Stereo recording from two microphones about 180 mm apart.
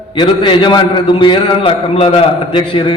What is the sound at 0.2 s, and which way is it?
A man's voice, 25° left (ahead or behind).